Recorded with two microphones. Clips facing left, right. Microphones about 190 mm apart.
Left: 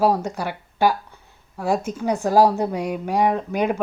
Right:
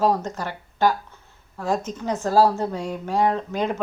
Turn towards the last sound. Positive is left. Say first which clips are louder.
# left 3 dB
turn(degrees=15)  # may be behind; listen again after turning